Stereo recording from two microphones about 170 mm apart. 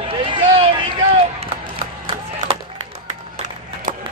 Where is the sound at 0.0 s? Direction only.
30° right (ahead or behind).